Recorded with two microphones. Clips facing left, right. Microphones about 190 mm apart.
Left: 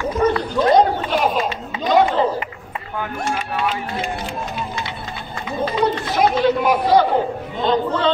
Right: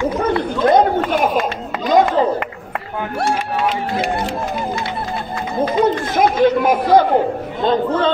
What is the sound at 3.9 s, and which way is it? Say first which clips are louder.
Music: right 5 dB; 75° right (ahead or behind).